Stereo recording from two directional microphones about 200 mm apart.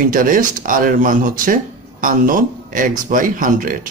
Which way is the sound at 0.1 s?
40° right (ahead or behind).